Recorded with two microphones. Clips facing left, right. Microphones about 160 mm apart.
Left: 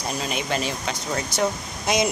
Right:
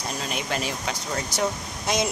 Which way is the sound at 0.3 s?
5° right (ahead or behind).